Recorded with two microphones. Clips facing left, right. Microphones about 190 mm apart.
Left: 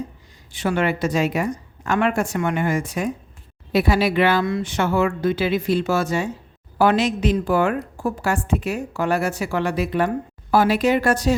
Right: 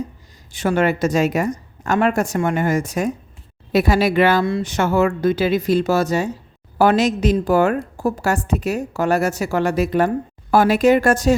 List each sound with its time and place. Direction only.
0.5 s a woman's voice: 45° right (ahead or behind)
4.4 s speech: 30° right (ahead or behind)
4.7 s a woman's voice: 45° right (ahead or behind)